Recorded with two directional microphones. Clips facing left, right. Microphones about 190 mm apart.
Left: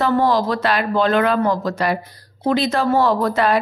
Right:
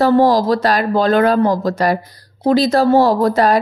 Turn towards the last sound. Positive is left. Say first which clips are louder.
# right 4 dB
turn(degrees=-40)  # may be behind; listen again after turning